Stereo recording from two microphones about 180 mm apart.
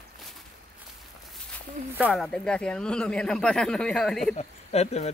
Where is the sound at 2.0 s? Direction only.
Centre (ahead or behind).